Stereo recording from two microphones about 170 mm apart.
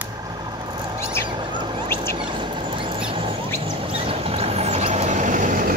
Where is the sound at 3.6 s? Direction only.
30° right (ahead or behind).